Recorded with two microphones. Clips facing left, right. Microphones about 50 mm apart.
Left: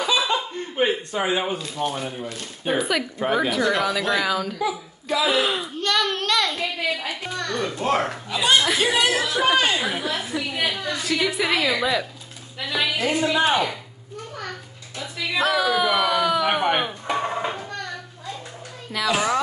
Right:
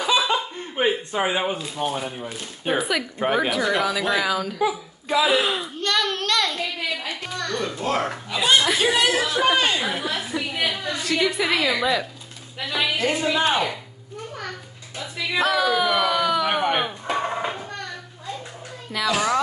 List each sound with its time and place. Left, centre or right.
0.0 s speech: centre
4.6 s speech: centre
5.2 s speech: centre
15.0 s a sound: centre
19.0 s music: centre